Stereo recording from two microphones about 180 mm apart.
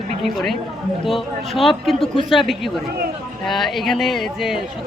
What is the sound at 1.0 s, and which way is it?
Speech, centre (ahead or behind).